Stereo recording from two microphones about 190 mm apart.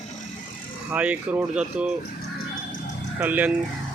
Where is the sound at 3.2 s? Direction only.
10° right (ahead or behind).